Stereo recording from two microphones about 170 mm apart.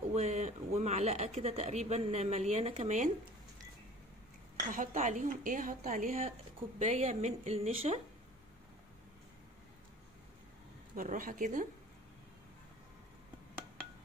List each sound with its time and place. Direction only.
0.1 s speech: 40° right (ahead or behind)
4.7 s a woman's voice: 45° right (ahead or behind)
11.0 s a woman's voice: 50° right (ahead or behind)